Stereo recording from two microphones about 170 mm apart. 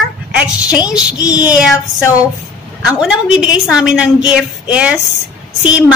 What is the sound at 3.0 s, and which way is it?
Speech, 5° right (ahead or behind).